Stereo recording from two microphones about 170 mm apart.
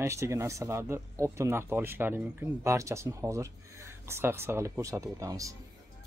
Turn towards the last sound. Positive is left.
turn(degrees=-20)  # may be behind; listen again after turning